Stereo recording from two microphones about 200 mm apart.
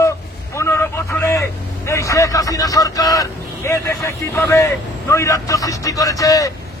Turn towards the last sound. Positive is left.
turn(degrees=15)  # may be behind; listen again after turning